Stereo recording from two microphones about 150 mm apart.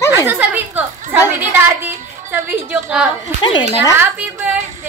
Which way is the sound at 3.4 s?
30° left (ahead or behind).